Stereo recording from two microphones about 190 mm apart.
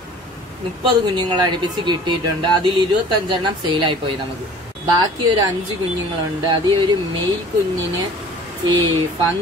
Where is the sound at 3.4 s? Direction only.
25° right (ahead or behind).